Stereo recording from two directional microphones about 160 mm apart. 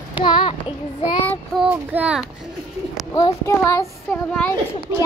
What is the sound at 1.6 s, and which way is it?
Speech, 10° right (ahead or behind).